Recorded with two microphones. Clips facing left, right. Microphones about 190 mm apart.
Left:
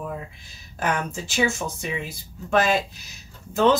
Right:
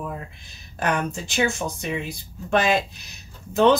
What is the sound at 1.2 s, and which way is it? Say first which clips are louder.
Speech: left 1 dB; 5° left (ahead or behind).